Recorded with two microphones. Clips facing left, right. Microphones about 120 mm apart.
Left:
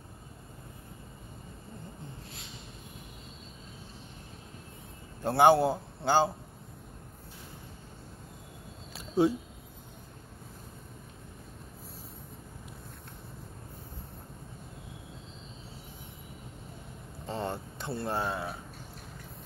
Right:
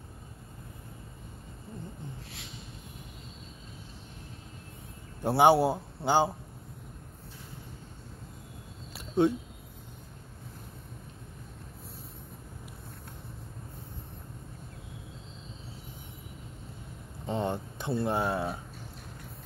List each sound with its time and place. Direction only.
5.2 s a man's voice: 10° right (ahead or behind)
8.9 s a sound: 5° left (ahead or behind)
17.3 s speech: 20° right (ahead or behind)